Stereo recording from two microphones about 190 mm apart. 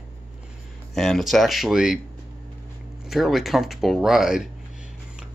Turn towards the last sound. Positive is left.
turn(degrees=0)  # may be behind; listen again after turning